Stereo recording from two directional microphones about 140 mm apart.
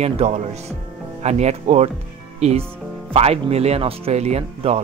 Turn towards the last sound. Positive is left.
turn(degrees=-50)  # may be behind; listen again after turning